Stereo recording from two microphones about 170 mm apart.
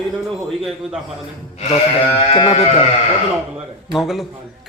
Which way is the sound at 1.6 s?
35° left (ahead or behind).